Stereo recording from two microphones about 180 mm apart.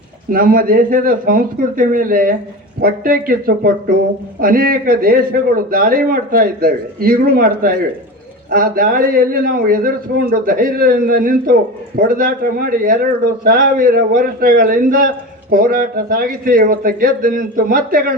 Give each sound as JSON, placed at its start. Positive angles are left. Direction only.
{"t": 0.3, "sound": "a man's voice", "side_deg": -50}